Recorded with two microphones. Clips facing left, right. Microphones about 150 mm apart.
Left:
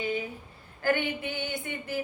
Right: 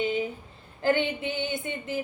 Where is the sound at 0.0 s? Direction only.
20° right (ahead or behind).